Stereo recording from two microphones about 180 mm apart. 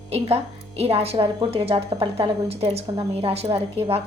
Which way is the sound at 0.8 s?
35° right (ahead or behind).